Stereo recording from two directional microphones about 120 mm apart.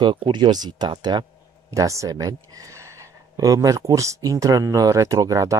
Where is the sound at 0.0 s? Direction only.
40° right (ahead or behind).